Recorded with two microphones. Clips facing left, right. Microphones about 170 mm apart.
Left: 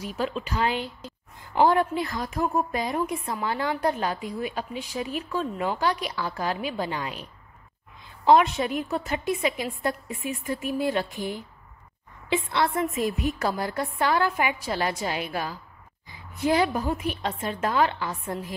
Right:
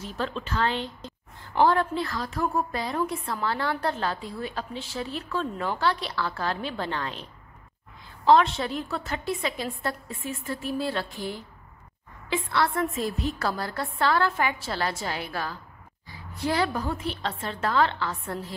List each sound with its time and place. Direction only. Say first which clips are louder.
0.0 s a woman's voice: left 2 dB; 10° left (ahead or behind)
8.3 s a woman's voice: left 1 dB; 15° left (ahead or behind)